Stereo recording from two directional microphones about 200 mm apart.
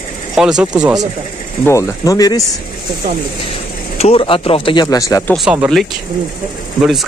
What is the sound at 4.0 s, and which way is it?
Speech, 25° left (ahead or behind).